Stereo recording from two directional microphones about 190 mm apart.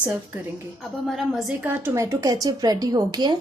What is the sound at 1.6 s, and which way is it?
Speech, 10° right (ahead or behind).